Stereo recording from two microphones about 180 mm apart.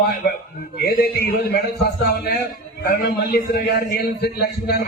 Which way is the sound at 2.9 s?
60° left (ahead or behind).